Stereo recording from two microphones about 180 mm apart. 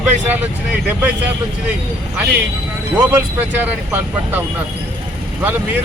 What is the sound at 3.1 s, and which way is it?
Speech, 10° right (ahead or behind).